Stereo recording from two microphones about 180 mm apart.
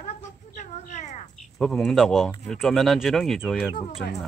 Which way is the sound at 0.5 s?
45° left (ahead or behind).